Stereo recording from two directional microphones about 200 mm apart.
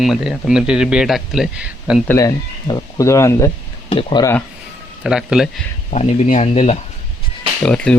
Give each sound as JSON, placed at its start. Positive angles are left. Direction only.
{"t": 0.0, "sound": "speech", "side_deg": 0}
{"t": 2.0, "sound": "speech", "side_deg": 15}
{"t": 5.0, "sound": "speech", "side_deg": -5}
{"t": 5.9, "sound": "speech", "side_deg": 35}
{"t": 7.6, "sound": "speech", "side_deg": 5}